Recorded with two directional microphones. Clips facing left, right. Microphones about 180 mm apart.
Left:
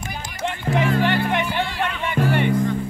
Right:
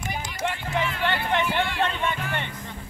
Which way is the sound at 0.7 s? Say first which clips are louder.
Left 10 dB; 50° left (ahead or behind).